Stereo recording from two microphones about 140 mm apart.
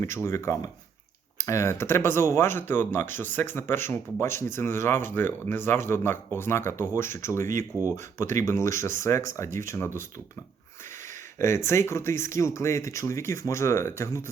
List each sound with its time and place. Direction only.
0.3 s speech: 20° left (ahead or behind)
11.3 s speech: 20° left (ahead or behind)